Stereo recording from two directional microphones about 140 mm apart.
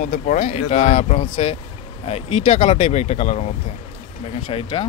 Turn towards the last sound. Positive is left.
turn(degrees=40)  # may be behind; listen again after turning